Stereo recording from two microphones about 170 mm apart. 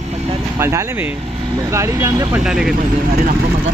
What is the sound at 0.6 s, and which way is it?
Speech, 15° right (ahead or behind).